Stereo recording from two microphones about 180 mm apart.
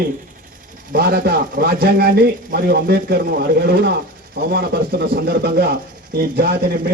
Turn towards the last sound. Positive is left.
turn(degrees=-55)  # may be behind; listen again after turning